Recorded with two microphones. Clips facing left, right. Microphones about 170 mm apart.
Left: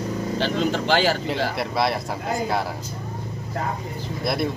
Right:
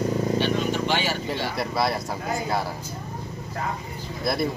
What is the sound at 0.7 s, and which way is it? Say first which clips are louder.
Speech: left 4 dB; 90° left.